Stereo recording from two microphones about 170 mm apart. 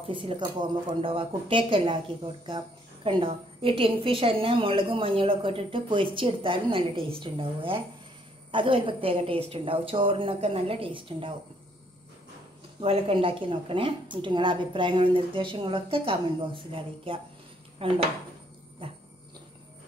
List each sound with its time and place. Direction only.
0.1 s a woman's voice: 30° right (ahead or behind)
12.8 s a woman's voice: 35° right (ahead or behind)
18.8 s dog: 30° right (ahead or behind)